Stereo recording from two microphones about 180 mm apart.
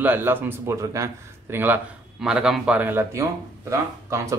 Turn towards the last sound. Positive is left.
turn(degrees=-15)  # may be behind; listen again after turning